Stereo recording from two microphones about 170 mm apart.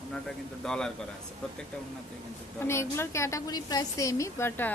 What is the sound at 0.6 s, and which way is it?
Speech, 5° left (ahead or behind).